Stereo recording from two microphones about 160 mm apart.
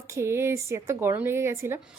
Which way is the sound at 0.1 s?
15° right (ahead or behind).